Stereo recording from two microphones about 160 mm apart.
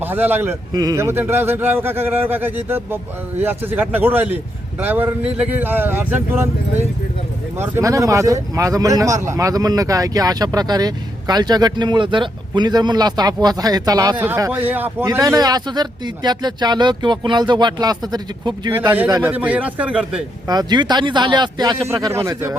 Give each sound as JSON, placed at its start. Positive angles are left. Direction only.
{"t": 0.0, "sound": "a man's voice", "side_deg": -10}
{"t": 0.7, "sound": "a man's voice", "side_deg": -25}
{"t": 19.2, "sound": "a man's voice", "side_deg": -10}
{"t": 20.5, "sound": "a man's voice", "side_deg": -25}